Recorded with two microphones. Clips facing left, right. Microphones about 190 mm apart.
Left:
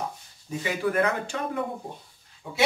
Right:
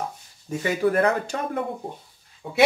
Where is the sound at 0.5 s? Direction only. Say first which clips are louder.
Right 5 dB; 40° right (ahead or behind).